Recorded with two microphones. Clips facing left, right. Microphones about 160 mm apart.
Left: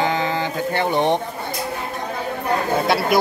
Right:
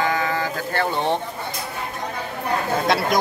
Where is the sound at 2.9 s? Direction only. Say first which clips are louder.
Even; 5° left (ahead or behind).